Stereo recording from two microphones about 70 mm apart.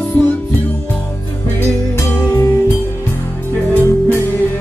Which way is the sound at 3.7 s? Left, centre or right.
Left.